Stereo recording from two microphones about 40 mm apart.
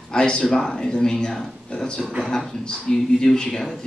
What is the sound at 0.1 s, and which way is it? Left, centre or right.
A man's voice, centre.